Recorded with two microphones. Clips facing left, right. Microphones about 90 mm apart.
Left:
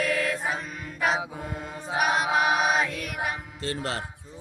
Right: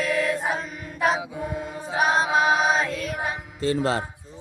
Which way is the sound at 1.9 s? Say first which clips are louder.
Right 3 dB; 35° right (ahead or behind).